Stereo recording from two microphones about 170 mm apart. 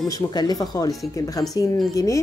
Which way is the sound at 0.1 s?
25° left (ahead or behind).